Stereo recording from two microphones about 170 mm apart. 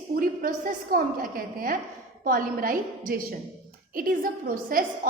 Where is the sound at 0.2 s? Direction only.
55° right (ahead or behind).